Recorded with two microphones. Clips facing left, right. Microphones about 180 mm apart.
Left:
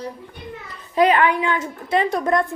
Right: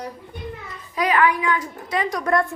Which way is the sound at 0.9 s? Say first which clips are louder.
Left 3 dB; 25° left (ahead or behind).